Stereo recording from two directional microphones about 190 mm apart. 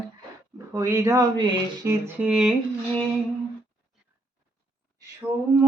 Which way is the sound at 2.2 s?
Centre (ahead or behind).